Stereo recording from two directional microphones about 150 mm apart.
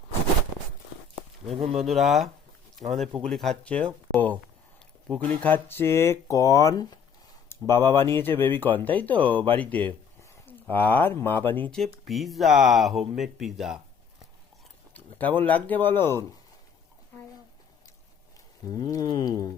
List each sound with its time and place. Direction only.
1.8 s speech: centre (ahead or behind)
14.9 s speech: 10° left (ahead or behind)
18.7 s a sound: 25° left (ahead or behind)